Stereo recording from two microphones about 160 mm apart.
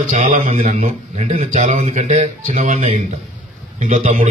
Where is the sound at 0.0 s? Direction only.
50° right (ahead or behind).